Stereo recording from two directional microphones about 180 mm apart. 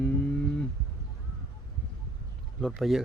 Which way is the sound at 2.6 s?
Centre (ahead or behind).